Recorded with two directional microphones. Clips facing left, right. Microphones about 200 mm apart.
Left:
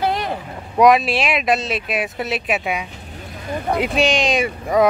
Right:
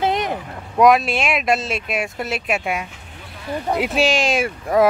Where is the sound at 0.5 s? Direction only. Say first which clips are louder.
Left 1 dB; centre (ahead or behind).